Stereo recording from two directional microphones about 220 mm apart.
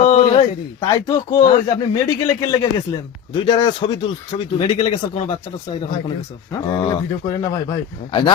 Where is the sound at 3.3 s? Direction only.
20° left (ahead or behind).